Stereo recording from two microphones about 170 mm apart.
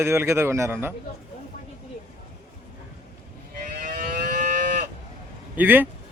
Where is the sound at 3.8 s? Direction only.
55° right (ahead or behind).